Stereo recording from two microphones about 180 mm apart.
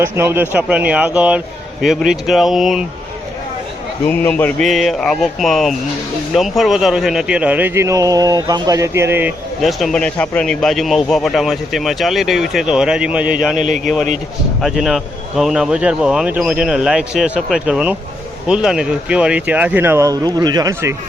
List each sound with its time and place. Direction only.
0.0 s a man's voice: 10° right (ahead or behind)
4.1 s a man's voice: 10° left (ahead or behind); by 9.3 s 10° right (ahead or behind)
9.6 s a man's voice: centre (ahead or behind)
13.6 s speech: 45° right (ahead or behind)
14.6 s a man's voice: centre (ahead or behind); by 20.9 s 20° right (ahead or behind)